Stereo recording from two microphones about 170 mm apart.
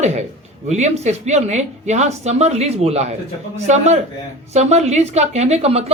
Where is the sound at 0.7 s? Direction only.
40° right (ahead or behind).